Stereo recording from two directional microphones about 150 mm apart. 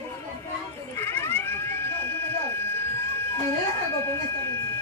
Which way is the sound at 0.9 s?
15° left (ahead or behind).